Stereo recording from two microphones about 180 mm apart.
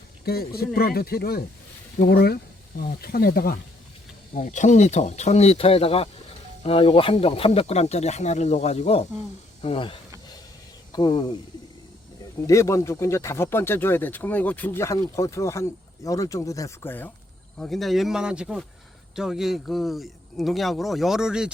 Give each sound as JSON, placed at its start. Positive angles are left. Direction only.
{"t": 0.3, "sound": "speech", "side_deg": 60}
{"t": 4.4, "sound": "speech", "side_deg": 40}
{"t": 12.5, "sound": "speech", "side_deg": 15}
{"t": 17.6, "sound": "speech", "side_deg": 0}